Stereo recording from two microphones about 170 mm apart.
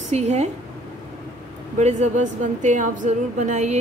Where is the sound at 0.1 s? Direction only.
40° right (ahead or behind).